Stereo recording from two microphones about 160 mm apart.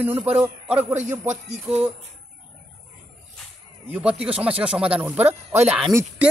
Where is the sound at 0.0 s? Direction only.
10° right (ahead or behind).